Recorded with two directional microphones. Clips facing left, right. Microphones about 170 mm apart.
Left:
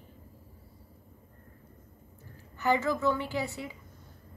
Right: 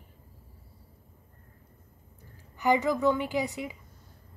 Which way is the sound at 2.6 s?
15° right (ahead or behind).